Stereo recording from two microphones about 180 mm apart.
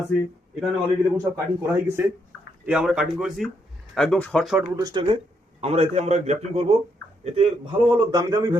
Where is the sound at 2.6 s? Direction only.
5° right (ahead or behind).